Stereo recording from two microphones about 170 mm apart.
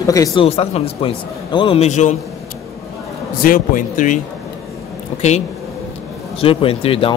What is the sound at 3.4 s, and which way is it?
Speech, 55° left (ahead or behind).